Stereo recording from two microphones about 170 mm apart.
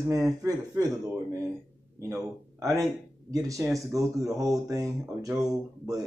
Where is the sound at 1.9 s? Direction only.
15° right (ahead or behind).